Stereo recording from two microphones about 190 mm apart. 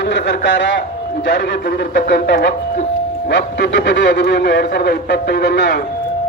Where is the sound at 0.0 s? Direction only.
70° left (ahead or behind).